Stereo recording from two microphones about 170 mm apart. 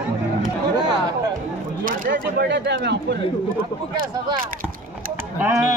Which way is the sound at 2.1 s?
90° right.